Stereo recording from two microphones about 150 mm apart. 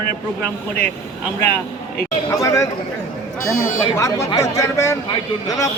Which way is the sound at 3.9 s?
20° left (ahead or behind).